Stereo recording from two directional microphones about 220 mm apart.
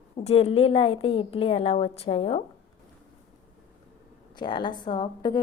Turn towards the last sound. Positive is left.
turn(degrees=20)  # may be behind; listen again after turning